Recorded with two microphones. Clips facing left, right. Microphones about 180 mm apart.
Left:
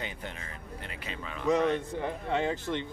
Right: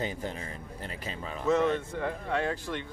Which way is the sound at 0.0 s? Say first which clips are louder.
Right 6 dB; 35° right (ahead or behind).